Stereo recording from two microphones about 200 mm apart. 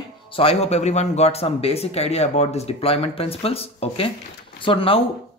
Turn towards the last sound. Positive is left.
turn(degrees=25)  # may be behind; listen again after turning